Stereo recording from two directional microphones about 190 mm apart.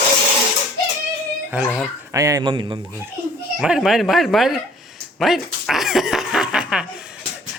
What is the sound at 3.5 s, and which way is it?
Speech, centre (ahead or behind).